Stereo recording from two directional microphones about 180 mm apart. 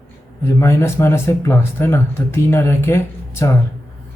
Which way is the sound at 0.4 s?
15° left (ahead or behind).